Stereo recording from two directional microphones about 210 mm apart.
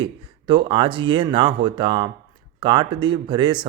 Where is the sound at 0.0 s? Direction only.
25° right (ahead or behind).